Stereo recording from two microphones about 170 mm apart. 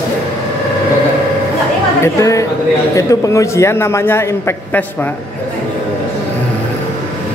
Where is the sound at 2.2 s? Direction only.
20° left (ahead or behind).